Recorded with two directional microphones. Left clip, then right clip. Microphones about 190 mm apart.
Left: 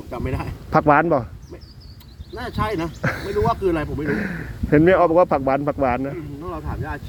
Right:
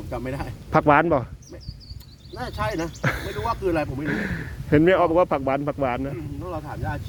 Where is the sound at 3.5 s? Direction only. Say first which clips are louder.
Left 3 dB; 20° right (ahead or behind).